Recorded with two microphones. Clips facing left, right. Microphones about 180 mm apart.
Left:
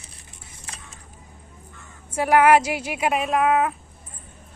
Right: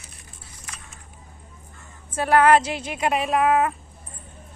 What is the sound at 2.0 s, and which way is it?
Speech, 10° left (ahead or behind).